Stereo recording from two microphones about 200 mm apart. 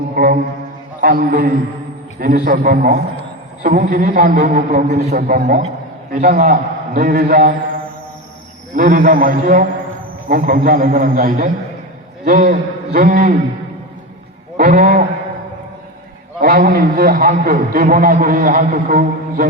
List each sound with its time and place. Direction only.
1.0 s a man's voice: 50° right (ahead or behind)
8.7 s a man's voice: 40° right (ahead or behind)
14.5 s a man's voice: 45° right (ahead or behind)
16.4 s a man's voice: 45° right (ahead or behind)